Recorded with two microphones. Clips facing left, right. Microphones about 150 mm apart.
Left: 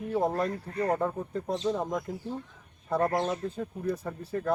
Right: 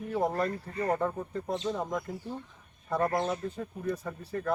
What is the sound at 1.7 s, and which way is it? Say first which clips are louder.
Speech: left 2 dB; 20° left (ahead or behind).